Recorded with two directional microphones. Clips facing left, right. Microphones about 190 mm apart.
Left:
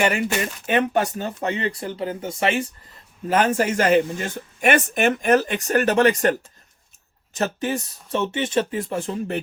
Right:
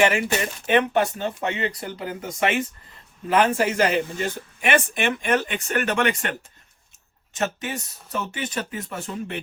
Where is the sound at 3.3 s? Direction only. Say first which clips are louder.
Even; 45° left (ahead or behind).